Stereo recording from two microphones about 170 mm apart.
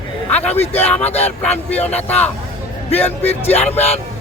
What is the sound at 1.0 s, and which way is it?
Speech, 40° left (ahead or behind).